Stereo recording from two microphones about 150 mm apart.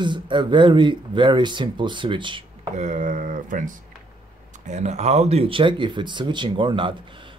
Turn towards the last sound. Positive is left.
turn(degrees=-35)  # may be behind; listen again after turning